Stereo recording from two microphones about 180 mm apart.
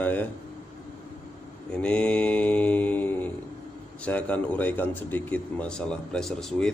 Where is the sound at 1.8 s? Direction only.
5° left (ahead or behind).